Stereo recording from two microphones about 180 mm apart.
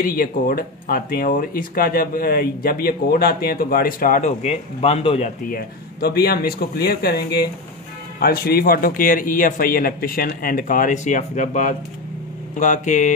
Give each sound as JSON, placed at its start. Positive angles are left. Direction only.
{"t": 0.0, "sound": "speech", "side_deg": 55}
{"t": 5.5, "sound": "speech", "side_deg": 55}